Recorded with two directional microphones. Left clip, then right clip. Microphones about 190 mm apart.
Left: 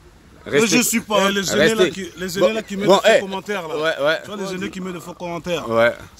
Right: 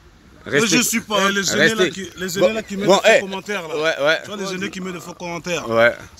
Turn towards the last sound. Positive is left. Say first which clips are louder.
# right 1 dB
turn(degrees=-10)  # may be behind; listen again after turning